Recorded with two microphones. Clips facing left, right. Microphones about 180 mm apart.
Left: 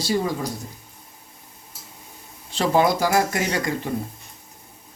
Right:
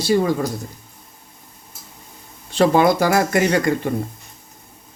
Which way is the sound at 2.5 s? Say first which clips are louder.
Right 5 dB; 60° right (ahead or behind).